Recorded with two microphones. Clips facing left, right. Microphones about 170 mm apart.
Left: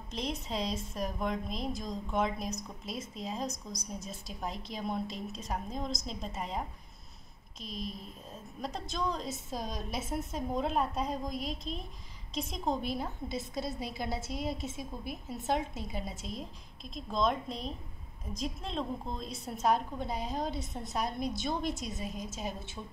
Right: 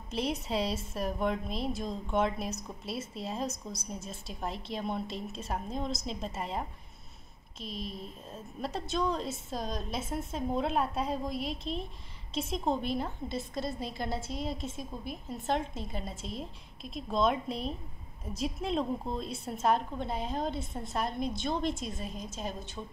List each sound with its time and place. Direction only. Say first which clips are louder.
0.1 s speech: right 4 dB; 5° right (ahead or behind)
7.6 s speech: right 1 dB; centre (ahead or behind)
22.1 s a woman's voice: left 1 dB; 45° left (ahead or behind)